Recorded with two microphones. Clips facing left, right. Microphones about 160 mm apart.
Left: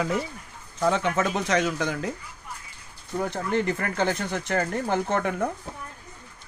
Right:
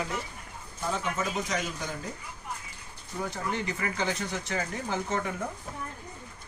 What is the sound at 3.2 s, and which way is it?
Speech, 60° left (ahead or behind).